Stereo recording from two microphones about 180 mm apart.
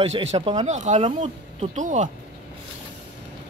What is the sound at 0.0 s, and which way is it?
Speech, 35° right (ahead or behind).